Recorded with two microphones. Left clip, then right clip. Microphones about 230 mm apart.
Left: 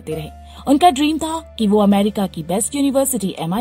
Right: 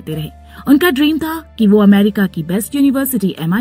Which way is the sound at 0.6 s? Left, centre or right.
Right.